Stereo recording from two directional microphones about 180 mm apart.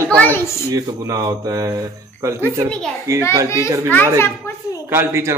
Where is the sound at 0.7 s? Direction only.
20° right (ahead or behind).